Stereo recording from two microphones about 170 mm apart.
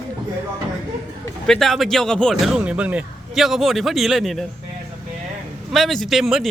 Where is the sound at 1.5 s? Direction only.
Centre (ahead or behind).